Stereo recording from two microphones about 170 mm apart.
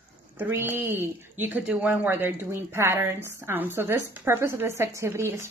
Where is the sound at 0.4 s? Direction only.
10° right (ahead or behind).